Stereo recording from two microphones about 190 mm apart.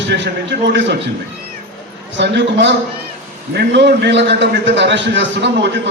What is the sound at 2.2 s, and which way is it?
A man's voice, 65° right (ahead or behind).